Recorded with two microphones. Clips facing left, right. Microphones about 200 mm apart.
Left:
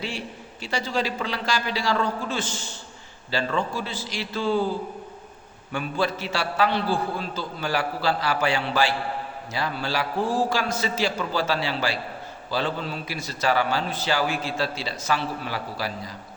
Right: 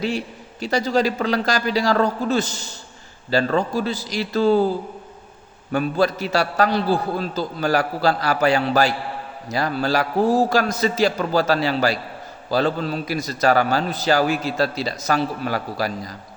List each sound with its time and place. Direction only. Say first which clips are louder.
0.6 s a man's voice: right 7 dB; 40° right (ahead or behind)
5.7 s a man's voice: right 6 dB; 40° right (ahead or behind)